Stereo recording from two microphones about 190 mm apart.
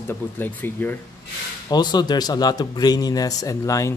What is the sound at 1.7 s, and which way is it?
Speech, 20° left (ahead or behind).